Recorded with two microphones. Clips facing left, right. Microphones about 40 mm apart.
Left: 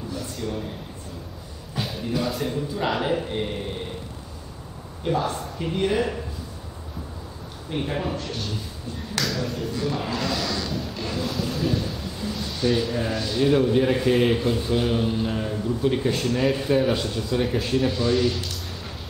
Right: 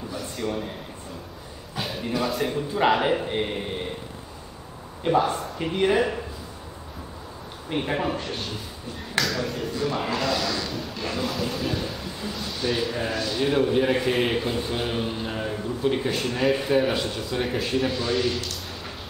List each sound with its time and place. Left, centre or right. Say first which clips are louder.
0.4 s a man's voice: right 2 dB; centre
1.8 s music: even; centre
2.1 s speech: right 1 dB; centre
2.5 s a man's voice: right 4 dB; right
5.0 s a man's voice: right 3 dB; centre
7.7 s a man's voice: right 1 dB; centre
9.2 s a man's voice: right 1 dB; centre